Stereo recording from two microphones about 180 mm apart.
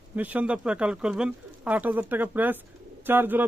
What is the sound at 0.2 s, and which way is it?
Speech, 10° right (ahead or behind).